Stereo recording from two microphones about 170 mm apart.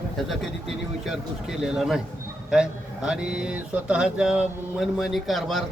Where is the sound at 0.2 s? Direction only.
Centre (ahead or behind).